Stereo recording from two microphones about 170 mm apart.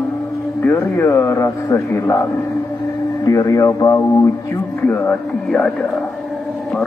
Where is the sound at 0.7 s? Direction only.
15° left (ahead or behind).